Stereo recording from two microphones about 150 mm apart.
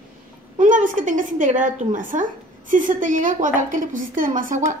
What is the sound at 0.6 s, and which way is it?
A woman's voice, 60° right (ahead or behind).